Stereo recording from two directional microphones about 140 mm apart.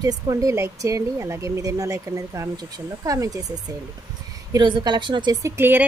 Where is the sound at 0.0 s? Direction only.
25° right (ahead or behind).